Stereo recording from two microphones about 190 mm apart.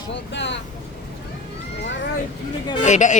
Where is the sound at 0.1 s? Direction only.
70° left (ahead or behind).